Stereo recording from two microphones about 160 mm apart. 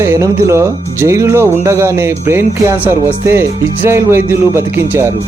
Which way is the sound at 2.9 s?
15° right (ahead or behind).